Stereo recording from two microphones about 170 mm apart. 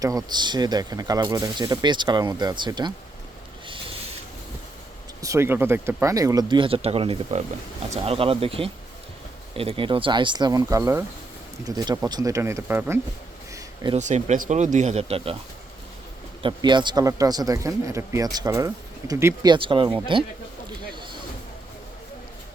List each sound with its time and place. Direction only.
0.0 s speech: 20° right (ahead or behind)
5.2 s speech: 15° right (ahead or behind)
13.9 s speech: 45° right (ahead or behind)
16.4 s speech: 25° right (ahead or behind)
20.9 s a sound: 30° right (ahead or behind)